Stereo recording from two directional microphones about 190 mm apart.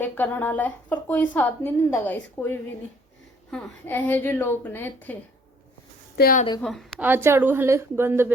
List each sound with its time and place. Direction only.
0.0 s a woman's voice: 10° left (ahead or behind)
6.1 s a woman's voice: 50° left (ahead or behind)
6.6 s a woman's voice: centre (ahead or behind)
7.0 s speech: 10° right (ahead or behind)